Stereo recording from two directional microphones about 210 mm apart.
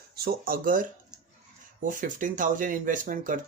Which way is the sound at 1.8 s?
40° right (ahead or behind).